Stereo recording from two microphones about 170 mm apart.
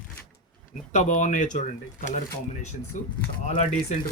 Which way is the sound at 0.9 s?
45° left (ahead or behind).